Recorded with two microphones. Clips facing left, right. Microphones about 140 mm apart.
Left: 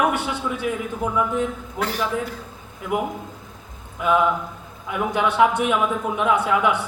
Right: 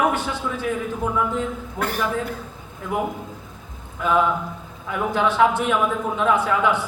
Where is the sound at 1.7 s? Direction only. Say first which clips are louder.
Even; 50° right (ahead or behind).